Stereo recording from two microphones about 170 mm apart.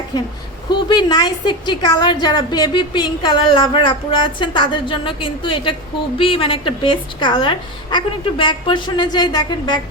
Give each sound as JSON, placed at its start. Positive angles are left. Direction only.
{"t": 0.7, "sound": "a woman's voice", "side_deg": 25}